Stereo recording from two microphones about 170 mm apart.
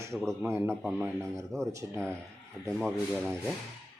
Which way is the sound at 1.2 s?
15° right (ahead or behind).